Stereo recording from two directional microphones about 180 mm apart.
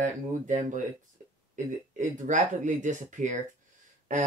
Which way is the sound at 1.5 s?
45° right (ahead or behind).